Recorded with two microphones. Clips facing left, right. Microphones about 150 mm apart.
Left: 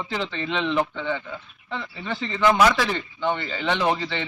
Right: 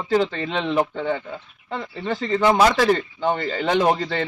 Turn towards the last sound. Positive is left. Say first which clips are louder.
# right 5 dB
turn(degrees=-45)  # may be behind; listen again after turning